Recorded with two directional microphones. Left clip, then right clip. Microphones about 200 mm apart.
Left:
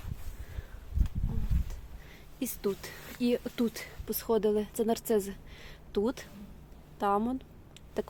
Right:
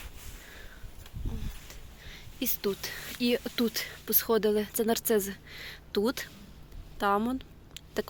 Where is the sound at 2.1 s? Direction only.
5° left (ahead or behind).